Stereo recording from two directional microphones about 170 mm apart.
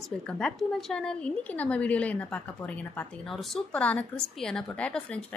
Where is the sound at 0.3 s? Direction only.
5° left (ahead or behind).